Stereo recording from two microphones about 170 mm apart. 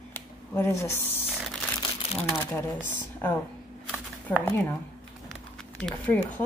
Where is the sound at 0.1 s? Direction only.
15° left (ahead or behind).